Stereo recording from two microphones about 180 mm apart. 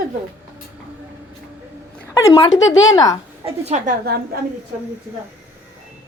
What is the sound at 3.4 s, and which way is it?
Speech, 35° right (ahead or behind).